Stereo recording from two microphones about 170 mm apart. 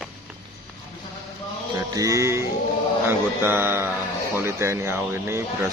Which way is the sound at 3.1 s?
15° right (ahead or behind).